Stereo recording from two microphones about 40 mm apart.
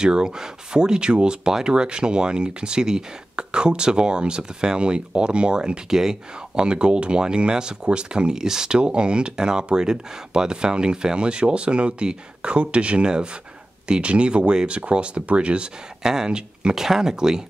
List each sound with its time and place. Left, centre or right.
0.0 s speech: centre
6.5 s speech: right
16.0 s speech: centre
16.7 s speech: centre